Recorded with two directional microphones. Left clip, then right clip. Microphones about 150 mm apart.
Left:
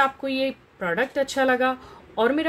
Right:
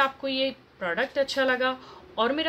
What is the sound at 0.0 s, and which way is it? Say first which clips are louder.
Speech: left 3 dB; 75° left (ahead or behind).